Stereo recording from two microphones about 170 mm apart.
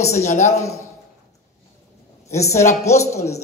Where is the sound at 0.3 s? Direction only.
45° left (ahead or behind).